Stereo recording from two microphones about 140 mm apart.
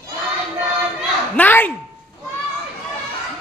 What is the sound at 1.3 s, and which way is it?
Speech, 10° left (ahead or behind).